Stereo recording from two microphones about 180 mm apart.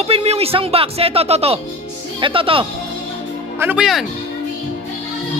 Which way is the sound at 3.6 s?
5° right (ahead or behind).